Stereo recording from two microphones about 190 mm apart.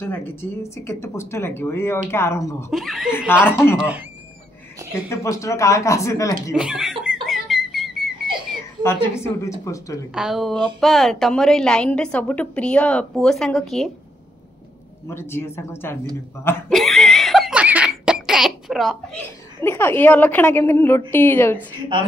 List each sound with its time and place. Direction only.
0.0 s speech: 10° left (ahead or behind)
2.7 s a woman's voice: centre (ahead or behind)
3.3 s speech: 10° left (ahead or behind)
3.7 s speech: 5° right (ahead or behind)
5.1 s speech: 15° left (ahead or behind)
6.5 s a woman's voice: 5° right (ahead or behind)
7.2 s a sound: centre (ahead or behind)
8.8 s speech: 15° left (ahead or behind)
10.1 s a woman's voice: centre (ahead or behind)
15.0 s speech: 15° left (ahead or behind)
16.7 s laughter: centre (ahead or behind)
19.6 s speech: 10° left (ahead or behind)